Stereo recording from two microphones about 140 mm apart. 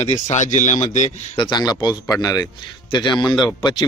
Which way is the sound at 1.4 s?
30° left (ahead or behind).